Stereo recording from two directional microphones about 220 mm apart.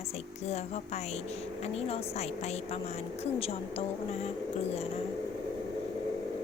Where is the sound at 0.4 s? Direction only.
30° left (ahead or behind).